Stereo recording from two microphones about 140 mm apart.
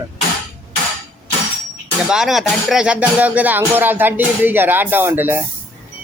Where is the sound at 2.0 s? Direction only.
5° right (ahead or behind).